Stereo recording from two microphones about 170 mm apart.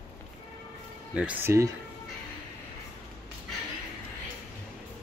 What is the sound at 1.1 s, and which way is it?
Speech, 10° right (ahead or behind).